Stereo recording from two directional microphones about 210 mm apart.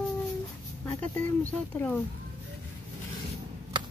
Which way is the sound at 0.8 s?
10° left (ahead or behind).